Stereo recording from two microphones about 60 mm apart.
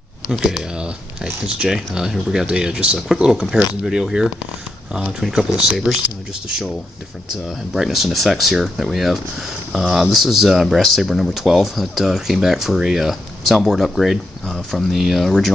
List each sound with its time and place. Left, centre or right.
0.3 s a sound: centre
1.4 s speech: centre
7.4 s speech: centre
14.4 s speech: centre
15.0 s speech: centre
15.2 s speech: centre